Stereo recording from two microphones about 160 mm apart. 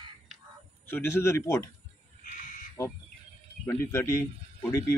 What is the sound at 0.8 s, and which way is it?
Speech, 15° left (ahead or behind).